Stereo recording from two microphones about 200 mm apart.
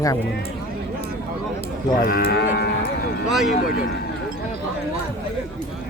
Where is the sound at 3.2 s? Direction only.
Centre (ahead or behind).